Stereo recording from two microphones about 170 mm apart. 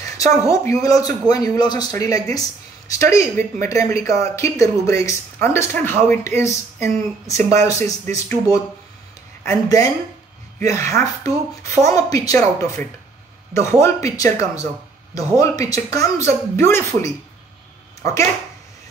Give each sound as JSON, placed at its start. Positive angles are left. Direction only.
{"t": 0.5, "sound": "speech", "side_deg": 20}
{"t": 9.5, "sound": "speech", "side_deg": 20}